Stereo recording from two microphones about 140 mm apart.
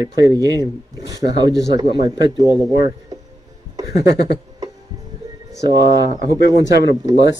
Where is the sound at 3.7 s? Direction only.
25° right (ahead or behind).